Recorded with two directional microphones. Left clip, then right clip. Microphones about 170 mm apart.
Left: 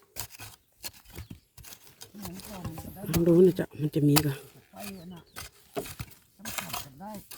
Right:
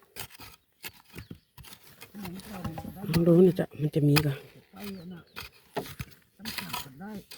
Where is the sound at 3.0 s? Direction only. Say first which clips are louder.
Left 1 dB; 10° left (ahead or behind).